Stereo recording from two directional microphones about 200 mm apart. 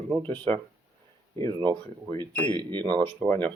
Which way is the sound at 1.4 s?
25° right (ahead or behind).